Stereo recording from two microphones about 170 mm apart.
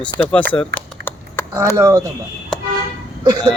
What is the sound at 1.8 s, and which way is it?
Speech, 20° right (ahead or behind).